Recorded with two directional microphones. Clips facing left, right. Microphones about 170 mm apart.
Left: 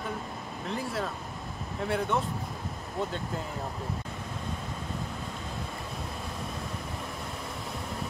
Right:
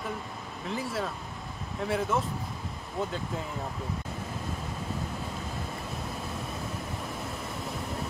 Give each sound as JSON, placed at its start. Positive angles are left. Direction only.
{"t": 0.7, "sound": "speech", "side_deg": 0}